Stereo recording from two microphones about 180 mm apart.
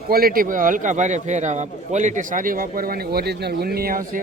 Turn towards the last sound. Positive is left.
turn(degrees=-50)  # may be behind; listen again after turning